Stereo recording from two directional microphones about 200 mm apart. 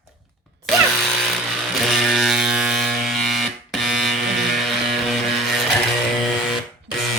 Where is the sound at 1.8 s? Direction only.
Centre (ahead or behind).